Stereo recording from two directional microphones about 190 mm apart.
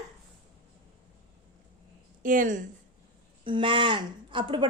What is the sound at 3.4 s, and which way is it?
Speech, 25° right (ahead or behind).